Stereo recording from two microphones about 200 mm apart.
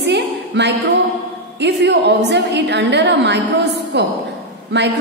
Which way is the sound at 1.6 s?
60° right (ahead or behind).